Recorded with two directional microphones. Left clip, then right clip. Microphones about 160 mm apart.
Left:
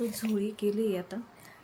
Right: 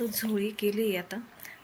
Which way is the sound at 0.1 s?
25° left (ahead or behind).